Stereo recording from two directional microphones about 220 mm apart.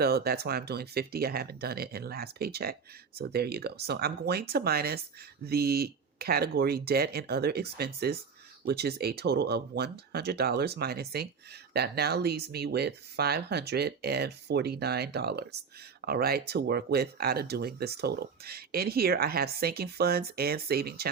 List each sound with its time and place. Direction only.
0.0 s speech: 45° right (ahead or behind)